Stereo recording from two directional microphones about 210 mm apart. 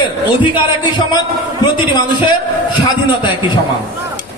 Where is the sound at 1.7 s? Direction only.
20° left (ahead or behind).